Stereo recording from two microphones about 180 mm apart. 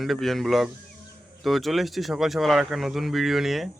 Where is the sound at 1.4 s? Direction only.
Centre (ahead or behind).